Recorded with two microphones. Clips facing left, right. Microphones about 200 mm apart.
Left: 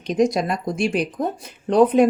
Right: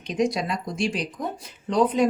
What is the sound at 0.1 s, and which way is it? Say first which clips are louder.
Speech: left 5 dB; 45° left (ahead or behind).